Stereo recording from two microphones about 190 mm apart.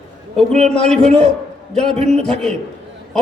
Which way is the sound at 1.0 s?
35° right (ahead or behind).